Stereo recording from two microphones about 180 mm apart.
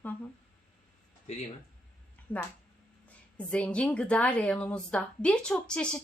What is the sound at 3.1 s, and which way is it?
A woman's voice, 5° left (ahead or behind).